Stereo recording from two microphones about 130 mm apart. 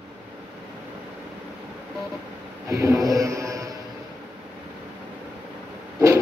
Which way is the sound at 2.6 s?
25° right (ahead or behind).